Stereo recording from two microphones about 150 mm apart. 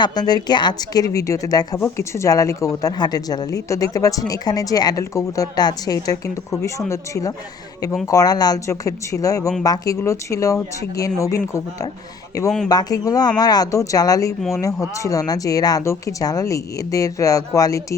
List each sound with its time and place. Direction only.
0.0 s speech: 25° left (ahead or behind)